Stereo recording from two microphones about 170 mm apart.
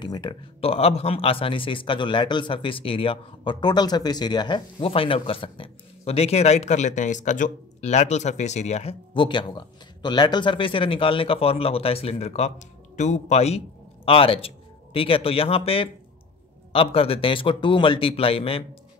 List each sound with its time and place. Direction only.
0.0 s speech: 25° left (ahead or behind)